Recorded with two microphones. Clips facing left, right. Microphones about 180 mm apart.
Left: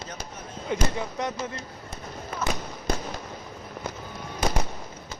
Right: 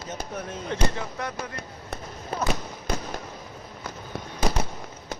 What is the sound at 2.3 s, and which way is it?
Fireworks, 35° right (ahead or behind).